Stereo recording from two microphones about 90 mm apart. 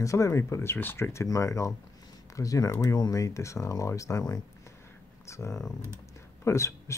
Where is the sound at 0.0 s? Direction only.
35° left (ahead or behind).